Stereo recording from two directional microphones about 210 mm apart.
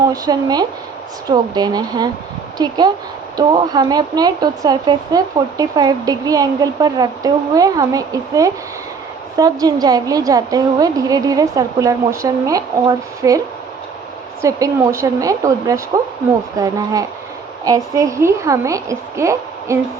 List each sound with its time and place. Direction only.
0.1 s speech: 20° right (ahead or behind)
14.4 s speech: 15° right (ahead or behind)